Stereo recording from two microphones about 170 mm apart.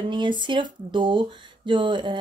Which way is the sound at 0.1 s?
30° right (ahead or behind).